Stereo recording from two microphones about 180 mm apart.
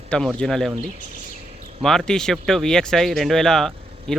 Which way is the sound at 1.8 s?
5° left (ahead or behind).